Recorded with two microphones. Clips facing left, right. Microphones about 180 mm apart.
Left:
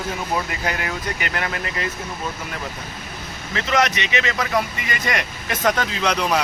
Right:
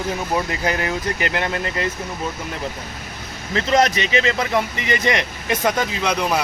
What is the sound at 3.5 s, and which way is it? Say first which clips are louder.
Speech: right 3 dB; 35° right (ahead or behind).